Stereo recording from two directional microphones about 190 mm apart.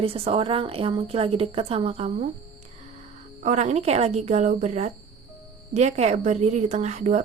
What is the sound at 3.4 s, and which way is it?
A woman's voice, 40° right (ahead or behind).